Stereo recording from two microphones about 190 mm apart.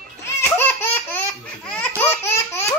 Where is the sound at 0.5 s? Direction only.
10° left (ahead or behind).